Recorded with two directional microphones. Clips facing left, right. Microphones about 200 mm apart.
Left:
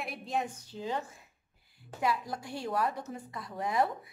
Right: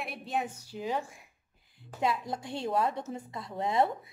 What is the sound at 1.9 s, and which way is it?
A woman's voice, 25° right (ahead or behind).